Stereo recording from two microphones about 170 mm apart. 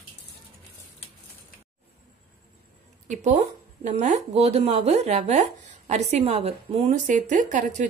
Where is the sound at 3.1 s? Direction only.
45° right (ahead or behind).